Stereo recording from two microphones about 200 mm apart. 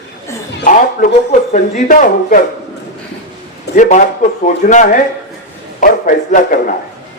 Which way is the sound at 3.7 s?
60° left (ahead or behind).